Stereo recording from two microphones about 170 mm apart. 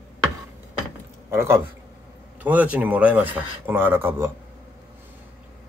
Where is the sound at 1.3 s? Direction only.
15° right (ahead or behind).